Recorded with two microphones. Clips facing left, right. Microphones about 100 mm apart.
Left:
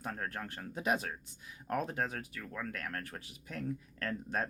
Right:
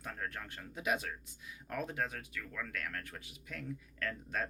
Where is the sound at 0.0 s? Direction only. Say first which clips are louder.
Left 3 dB; 35° left (ahead or behind).